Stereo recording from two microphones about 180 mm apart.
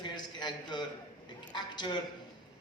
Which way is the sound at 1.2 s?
25° left (ahead or behind).